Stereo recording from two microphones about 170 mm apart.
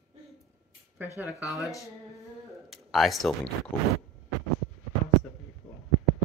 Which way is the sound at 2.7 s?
Centre (ahead or behind).